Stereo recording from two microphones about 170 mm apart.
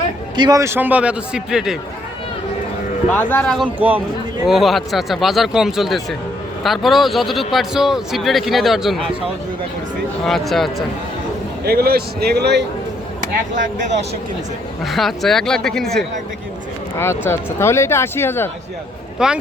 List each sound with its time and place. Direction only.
0.3 s a man's voice: 25° right (ahead or behind); by 1.8 s 5° right (ahead or behind)
3.1 s speech: 10° left (ahead or behind)
3.8 s a man's voice: 10° right (ahead or behind)
10.2 s speech: centre (ahead or behind)
11.6 s a man's voice: 65° right (ahead or behind)
13.5 s speech: 50° right (ahead or behind)
14.8 s speech: centre (ahead or behind)
17.0 s speech: 15° left (ahead or behind)
19.2 s speech: 5° right (ahead or behind)